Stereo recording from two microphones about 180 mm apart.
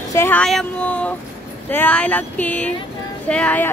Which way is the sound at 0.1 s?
15° left (ahead or behind).